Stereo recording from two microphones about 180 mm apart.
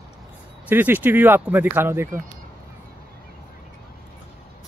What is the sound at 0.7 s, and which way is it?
Speech, 10° right (ahead or behind).